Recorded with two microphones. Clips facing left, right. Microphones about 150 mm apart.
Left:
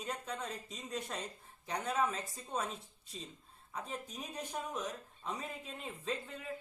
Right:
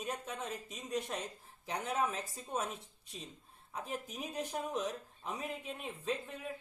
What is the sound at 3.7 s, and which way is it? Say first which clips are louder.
Speech: right 1 dB; 10° right (ahead or behind).